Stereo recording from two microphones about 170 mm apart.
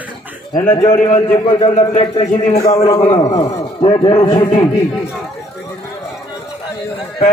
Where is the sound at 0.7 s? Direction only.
25° left (ahead or behind).